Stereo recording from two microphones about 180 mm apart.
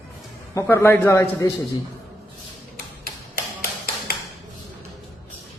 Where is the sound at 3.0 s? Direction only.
55° left (ahead or behind).